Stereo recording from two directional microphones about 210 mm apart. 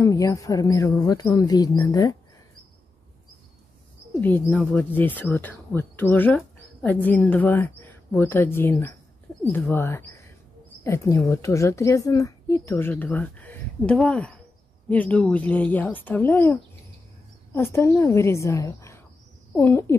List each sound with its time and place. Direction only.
0.0 s speech: 15° left (ahead or behind)
4.2 s speech: 5° left (ahead or behind)
17.6 s speech: 10° left (ahead or behind)